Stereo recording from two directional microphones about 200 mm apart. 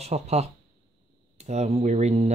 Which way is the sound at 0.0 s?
35° right (ahead or behind).